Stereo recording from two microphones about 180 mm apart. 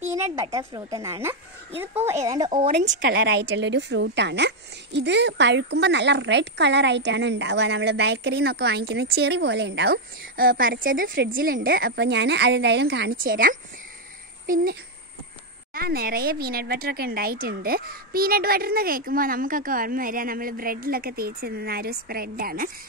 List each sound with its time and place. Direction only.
0.0 s a woman's voice: 15° right (ahead or behind)
2.9 s speech: 75° right (ahead or behind); by 22.7 s 55° right (ahead or behind)